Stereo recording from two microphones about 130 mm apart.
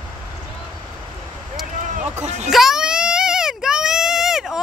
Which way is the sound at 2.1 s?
60° right (ahead or behind).